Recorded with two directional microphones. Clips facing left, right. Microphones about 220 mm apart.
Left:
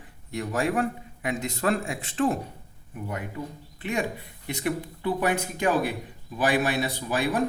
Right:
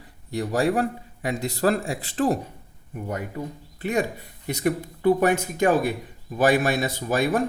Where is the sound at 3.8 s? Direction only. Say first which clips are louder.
Right 4 dB; 40° right (ahead or behind).